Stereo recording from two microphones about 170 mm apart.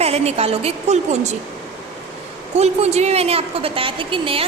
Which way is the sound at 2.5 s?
40° right (ahead or behind).